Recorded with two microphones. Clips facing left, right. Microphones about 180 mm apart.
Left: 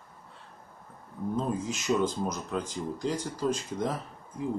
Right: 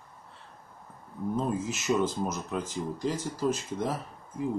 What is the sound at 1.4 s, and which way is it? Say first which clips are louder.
Speech: right 1 dB; 5° right (ahead or behind).